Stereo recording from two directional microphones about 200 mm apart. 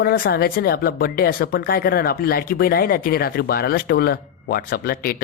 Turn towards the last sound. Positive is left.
turn(degrees=50)  # may be behind; listen again after turning